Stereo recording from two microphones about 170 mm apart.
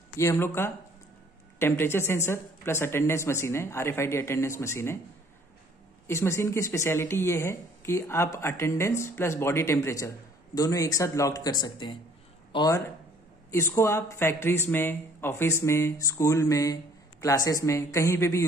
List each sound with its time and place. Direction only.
0.2 s speech: 15° left (ahead or behind)
6.0 s speech: 15° left (ahead or behind)